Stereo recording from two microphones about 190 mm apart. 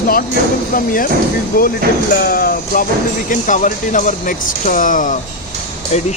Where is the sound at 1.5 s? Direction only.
50° left (ahead or behind).